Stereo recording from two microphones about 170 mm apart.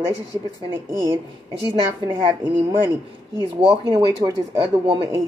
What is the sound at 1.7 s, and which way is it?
Speech, 25° right (ahead or behind).